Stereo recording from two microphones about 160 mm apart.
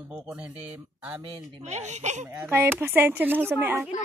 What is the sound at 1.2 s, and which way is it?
Speech, 40° right (ahead or behind).